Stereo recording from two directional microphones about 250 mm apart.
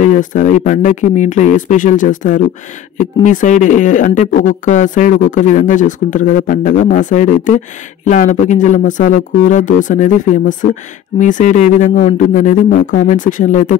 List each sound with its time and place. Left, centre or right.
0.0 s speech: left